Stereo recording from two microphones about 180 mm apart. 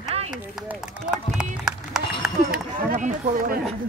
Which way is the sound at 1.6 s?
5° right (ahead or behind).